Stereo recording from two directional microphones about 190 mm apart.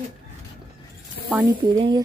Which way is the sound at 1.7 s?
25° right (ahead or behind).